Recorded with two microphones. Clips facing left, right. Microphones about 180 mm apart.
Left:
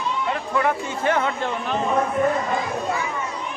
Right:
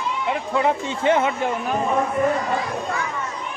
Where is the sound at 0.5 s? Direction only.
20° right (ahead or behind).